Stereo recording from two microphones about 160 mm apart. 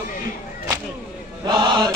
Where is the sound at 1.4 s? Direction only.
30° right (ahead or behind).